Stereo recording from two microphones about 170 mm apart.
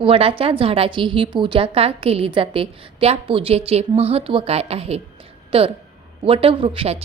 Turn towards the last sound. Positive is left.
turn(degrees=-35)  # may be behind; listen again after turning